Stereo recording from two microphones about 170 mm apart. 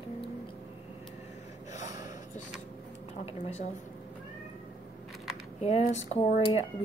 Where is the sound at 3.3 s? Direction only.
40° left (ahead or behind).